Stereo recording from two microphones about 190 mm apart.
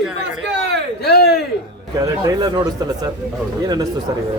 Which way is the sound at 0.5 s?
60° right (ahead or behind).